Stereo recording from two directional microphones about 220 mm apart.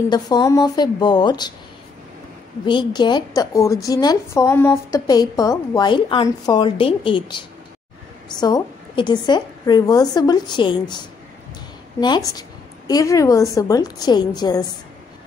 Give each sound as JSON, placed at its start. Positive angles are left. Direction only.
{"t": 0.1, "sound": "a woman's voice", "side_deg": 20}
{"t": 2.6, "sound": "a woman's voice", "side_deg": 20}
{"t": 12.0, "sound": "a woman's voice", "side_deg": 15}